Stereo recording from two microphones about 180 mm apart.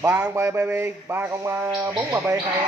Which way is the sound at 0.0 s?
15° right (ahead or behind).